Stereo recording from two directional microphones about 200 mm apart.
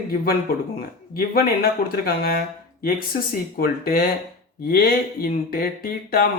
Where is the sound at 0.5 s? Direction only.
45° left (ahead or behind).